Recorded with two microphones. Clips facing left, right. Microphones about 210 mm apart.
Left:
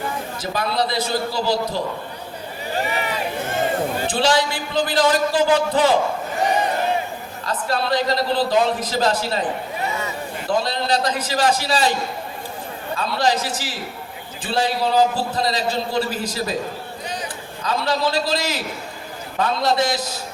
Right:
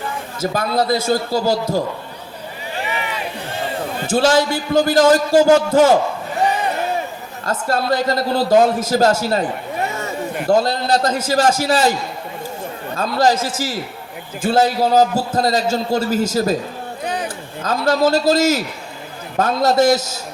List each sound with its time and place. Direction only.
0.5 s a man's voice: 45° right (ahead or behind)
2.7 s boat: 40° left (ahead or behind)
4.0 s a man's voice: 45° right (ahead or behind)
7.4 s a man's voice: 45° right (ahead or behind)
13.0 s a man's voice: 45° right (ahead or behind)
14.4 s a man's voice: 45° right (ahead or behind)